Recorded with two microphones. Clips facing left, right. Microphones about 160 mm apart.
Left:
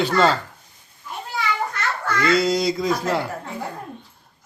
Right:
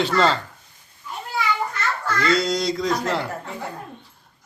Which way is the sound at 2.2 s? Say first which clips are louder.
Left 3 dB; 5° left (ahead or behind).